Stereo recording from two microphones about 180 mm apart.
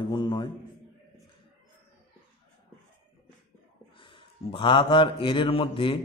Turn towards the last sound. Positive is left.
turn(degrees=30)  # may be behind; listen again after turning